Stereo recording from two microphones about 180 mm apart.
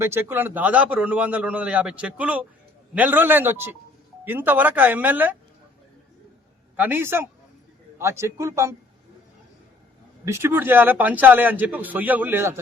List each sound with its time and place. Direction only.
0.0 s a man's voice: 15° right (ahead or behind)
6.7 s a man's voice: 10° right (ahead or behind)
10.2 s a man's voice: 15° right (ahead or behind)